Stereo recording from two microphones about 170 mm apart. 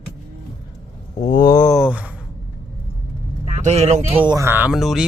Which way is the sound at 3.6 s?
40° right (ahead or behind).